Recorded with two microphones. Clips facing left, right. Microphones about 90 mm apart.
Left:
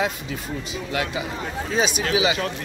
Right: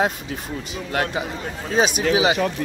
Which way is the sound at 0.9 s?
50° right (ahead or behind).